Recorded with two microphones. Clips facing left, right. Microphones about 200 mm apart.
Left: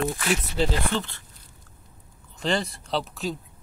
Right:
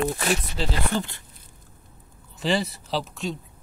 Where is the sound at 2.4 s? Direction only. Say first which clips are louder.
Right 2 dB; 5° right (ahead or behind).